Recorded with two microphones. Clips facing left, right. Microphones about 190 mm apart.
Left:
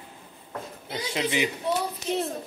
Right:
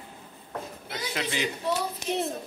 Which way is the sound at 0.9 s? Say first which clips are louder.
Left 4 dB; 15° left (ahead or behind).